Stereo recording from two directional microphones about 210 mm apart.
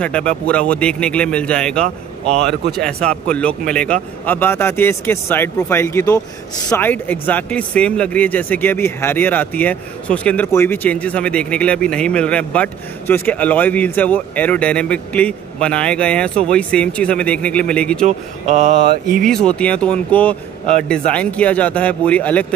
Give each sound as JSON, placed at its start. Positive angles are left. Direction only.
{"t": 0.0, "sound": "speech", "side_deg": 5}
{"t": 18.0, "sound": "speech", "side_deg": -35}
{"t": 19.2, "sound": "speech", "side_deg": 5}